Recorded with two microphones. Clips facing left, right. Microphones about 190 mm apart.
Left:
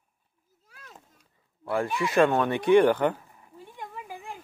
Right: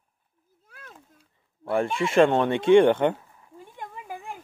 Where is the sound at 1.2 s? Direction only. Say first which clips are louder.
Right 4 dB; 25° right (ahead or behind).